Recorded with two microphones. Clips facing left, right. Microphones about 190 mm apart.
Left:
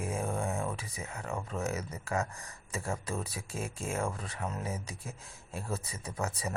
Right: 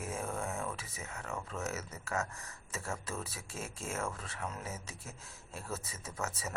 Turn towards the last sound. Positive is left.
turn(degrees=15)  # may be behind; listen again after turning